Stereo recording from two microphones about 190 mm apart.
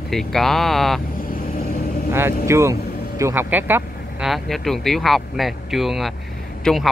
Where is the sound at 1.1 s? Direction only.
50° left (ahead or behind).